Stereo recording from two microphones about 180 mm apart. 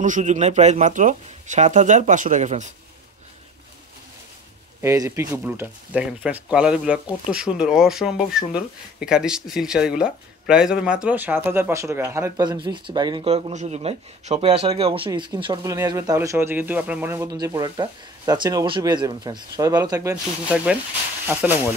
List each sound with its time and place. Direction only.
0.0 s speech: 45° right (ahead or behind)
4.8 s speech: 15° right (ahead or behind)